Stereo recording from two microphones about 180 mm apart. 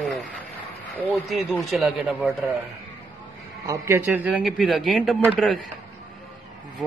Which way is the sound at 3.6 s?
15° right (ahead or behind).